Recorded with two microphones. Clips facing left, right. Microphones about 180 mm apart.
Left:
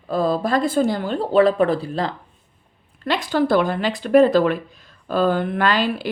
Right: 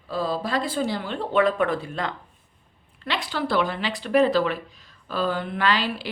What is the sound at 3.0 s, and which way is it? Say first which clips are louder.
Speech: left 8 dB; 45° left (ahead or behind).